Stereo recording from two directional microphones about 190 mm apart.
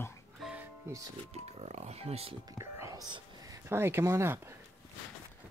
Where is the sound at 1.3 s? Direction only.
35° right (ahead or behind).